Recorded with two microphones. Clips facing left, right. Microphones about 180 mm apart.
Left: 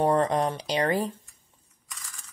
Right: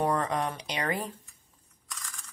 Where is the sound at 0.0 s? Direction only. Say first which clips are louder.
Left 5 dB; 30° left (ahead or behind).